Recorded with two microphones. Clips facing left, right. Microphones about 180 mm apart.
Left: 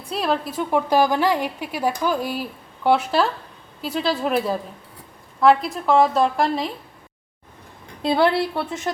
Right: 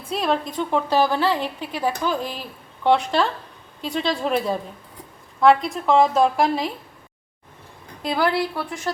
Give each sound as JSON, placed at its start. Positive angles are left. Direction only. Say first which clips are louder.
{"t": 0.0, "sound": "a woman's voice", "louder": "even", "side_deg": 0}
{"t": 8.0, "sound": "a woman's voice", "louder": "left 3 dB", "side_deg": 25}